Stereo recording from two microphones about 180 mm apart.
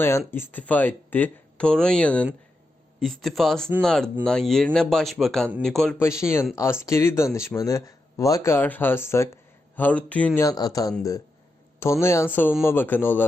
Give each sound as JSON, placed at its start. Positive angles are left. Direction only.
{"t": 0.0, "sound": "speech", "side_deg": 15}
{"t": 6.0, "sound": "speech", "side_deg": 15}